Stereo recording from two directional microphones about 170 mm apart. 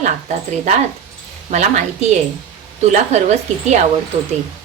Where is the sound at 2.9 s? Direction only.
45° right (ahead or behind).